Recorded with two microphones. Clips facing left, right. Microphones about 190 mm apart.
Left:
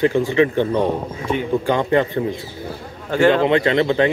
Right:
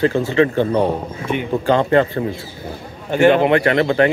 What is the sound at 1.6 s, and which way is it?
Speech, 15° left (ahead or behind).